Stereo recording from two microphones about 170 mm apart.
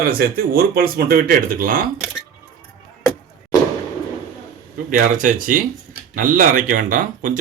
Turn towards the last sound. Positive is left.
turn(degrees=-50)  # may be behind; listen again after turning